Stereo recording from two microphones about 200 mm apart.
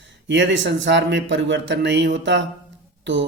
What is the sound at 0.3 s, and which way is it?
Speech, 65° right (ahead or behind).